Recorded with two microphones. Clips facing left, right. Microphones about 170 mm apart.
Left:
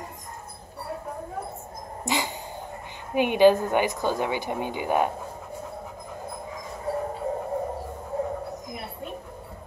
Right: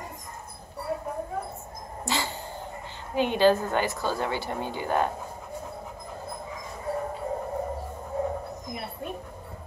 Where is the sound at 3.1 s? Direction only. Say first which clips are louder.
Left 3 dB; 15° left (ahead or behind).